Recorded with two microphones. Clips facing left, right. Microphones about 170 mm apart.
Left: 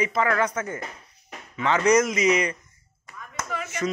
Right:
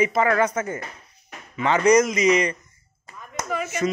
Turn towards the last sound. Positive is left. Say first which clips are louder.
# right 5 dB
turn(degrees=-20)  # may be behind; listen again after turning